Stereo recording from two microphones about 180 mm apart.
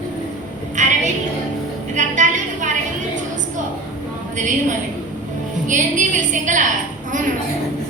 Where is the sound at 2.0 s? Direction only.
45° right (ahead or behind).